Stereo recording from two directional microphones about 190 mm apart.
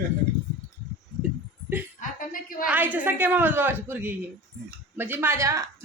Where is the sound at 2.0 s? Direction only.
45° left (ahead or behind).